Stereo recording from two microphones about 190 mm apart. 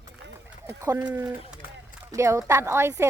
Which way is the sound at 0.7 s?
15° right (ahead or behind).